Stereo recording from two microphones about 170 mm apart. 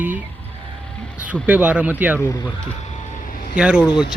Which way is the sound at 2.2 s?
20° left (ahead or behind).